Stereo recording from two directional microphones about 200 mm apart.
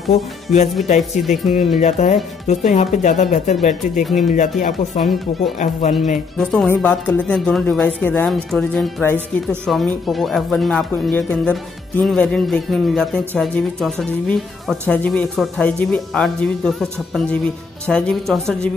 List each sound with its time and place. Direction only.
0.1 s speech: 35° left (ahead or behind)
6.3 s speech: centre (ahead or behind)